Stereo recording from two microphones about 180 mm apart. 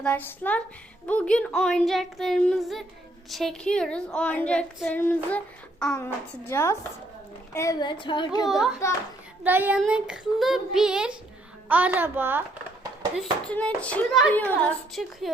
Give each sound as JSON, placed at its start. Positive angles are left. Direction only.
{"t": 0.0, "sound": "speech", "side_deg": 10}
{"t": 7.5, "sound": "child singing", "side_deg": 15}
{"t": 8.4, "sound": "speech", "side_deg": 0}
{"t": 11.7, "sound": "child singing", "side_deg": -10}
{"t": 13.1, "sound": "speech", "side_deg": 5}